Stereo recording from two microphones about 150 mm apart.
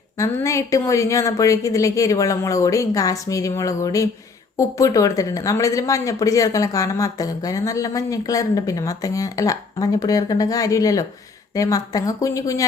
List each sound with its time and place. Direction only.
0.2 s speech: 20° left (ahead or behind)